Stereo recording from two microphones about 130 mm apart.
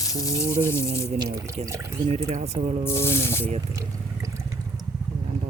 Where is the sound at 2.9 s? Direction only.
20° left (ahead or behind).